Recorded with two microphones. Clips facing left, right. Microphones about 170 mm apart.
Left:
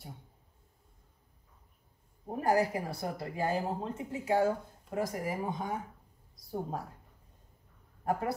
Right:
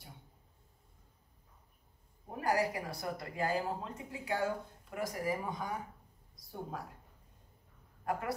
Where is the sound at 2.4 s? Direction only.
25° left (ahead or behind).